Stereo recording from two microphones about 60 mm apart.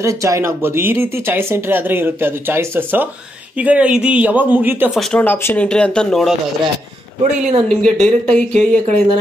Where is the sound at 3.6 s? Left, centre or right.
Right.